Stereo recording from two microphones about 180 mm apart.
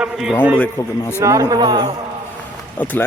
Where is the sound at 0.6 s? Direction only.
15° left (ahead or behind).